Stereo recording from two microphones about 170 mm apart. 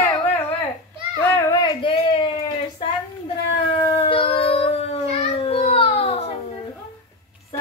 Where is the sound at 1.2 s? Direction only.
20° left (ahead or behind).